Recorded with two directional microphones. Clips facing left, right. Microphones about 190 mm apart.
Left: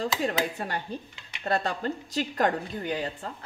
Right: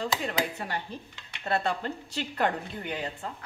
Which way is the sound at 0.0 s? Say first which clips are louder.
Left 2 dB; 40° left (ahead or behind).